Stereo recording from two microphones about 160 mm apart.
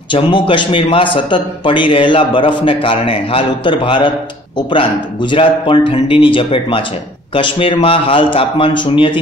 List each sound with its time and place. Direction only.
0.1 s a man's voice: 30° left (ahead or behind)